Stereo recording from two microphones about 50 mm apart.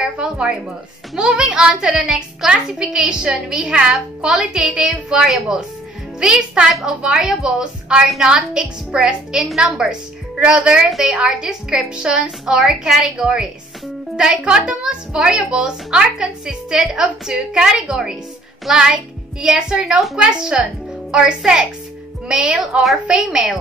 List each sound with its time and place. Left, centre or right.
0.0 s a woman's voice: centre